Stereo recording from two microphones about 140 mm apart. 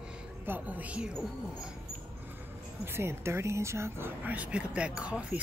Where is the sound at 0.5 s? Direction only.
10° right (ahead or behind).